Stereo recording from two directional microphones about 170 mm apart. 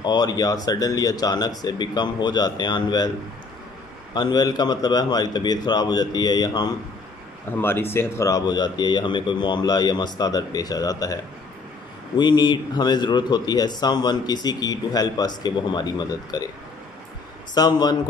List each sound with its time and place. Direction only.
0.0 s a man's voice: 25° left (ahead or behind)
4.1 s a man's voice: 25° left (ahead or behind)
7.5 s a man's voice: 15° left (ahead or behind)
12.2 s a man's voice: 25° left (ahead or behind)
17.6 s a man's voice: 25° left (ahead or behind)